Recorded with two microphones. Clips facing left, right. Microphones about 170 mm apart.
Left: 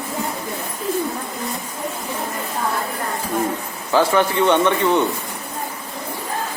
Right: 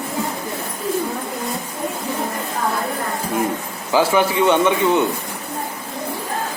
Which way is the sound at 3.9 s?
10° right (ahead or behind).